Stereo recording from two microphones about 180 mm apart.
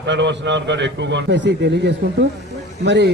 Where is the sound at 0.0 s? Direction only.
80° right.